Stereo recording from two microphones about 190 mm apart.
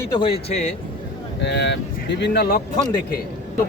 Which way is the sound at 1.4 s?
65° left (ahead or behind).